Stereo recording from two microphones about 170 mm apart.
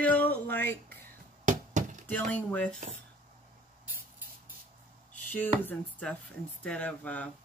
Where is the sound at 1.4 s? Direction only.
45° right (ahead or behind).